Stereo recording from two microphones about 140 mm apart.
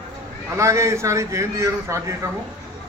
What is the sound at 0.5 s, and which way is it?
A man's voice, 20° right (ahead or behind).